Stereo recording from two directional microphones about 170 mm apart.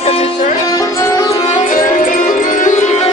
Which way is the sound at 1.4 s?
45° left (ahead or behind).